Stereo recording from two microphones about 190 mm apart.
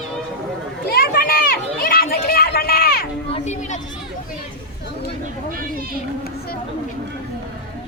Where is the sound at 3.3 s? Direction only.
35° left (ahead or behind).